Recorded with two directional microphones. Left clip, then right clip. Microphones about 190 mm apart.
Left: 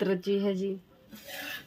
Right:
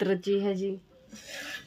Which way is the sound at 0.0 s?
15° right (ahead or behind).